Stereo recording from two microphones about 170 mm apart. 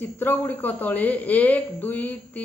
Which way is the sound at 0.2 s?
10° left (ahead or behind).